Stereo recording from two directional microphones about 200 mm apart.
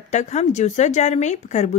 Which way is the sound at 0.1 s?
35° left (ahead or behind).